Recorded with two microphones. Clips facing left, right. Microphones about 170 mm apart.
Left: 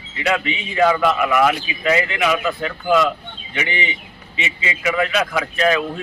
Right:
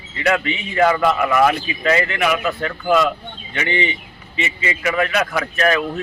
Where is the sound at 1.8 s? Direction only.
15° left (ahead or behind).